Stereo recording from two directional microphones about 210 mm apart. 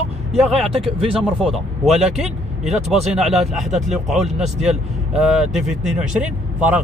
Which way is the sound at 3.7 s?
35° right (ahead or behind).